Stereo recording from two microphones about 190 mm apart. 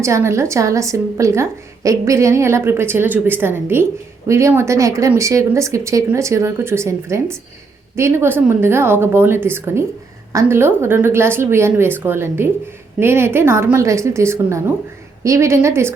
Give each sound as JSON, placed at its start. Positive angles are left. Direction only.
{"t": 0.0, "sound": "a woman's voice", "side_deg": -15}